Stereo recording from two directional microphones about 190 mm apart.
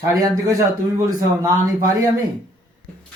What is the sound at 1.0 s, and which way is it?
Speech, 20° right (ahead or behind).